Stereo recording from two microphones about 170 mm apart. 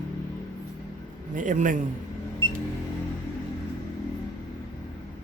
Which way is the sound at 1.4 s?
50° right (ahead or behind).